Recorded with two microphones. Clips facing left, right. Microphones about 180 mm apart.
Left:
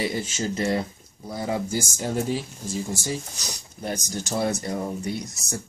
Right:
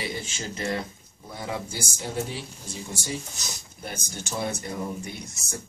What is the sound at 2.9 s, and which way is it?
Speech, 40° left (ahead or behind).